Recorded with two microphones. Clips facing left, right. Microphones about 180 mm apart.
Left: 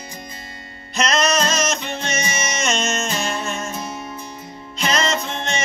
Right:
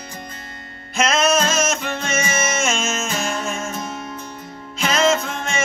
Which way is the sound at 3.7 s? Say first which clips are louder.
Right 1 dB; 10° left (ahead or behind).